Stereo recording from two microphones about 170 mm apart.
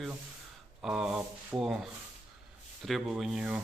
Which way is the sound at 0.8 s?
Centre (ahead or behind).